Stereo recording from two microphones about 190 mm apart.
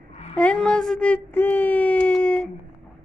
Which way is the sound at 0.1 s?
35° left (ahead or behind).